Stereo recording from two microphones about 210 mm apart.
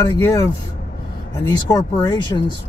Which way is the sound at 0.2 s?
15° left (ahead or behind).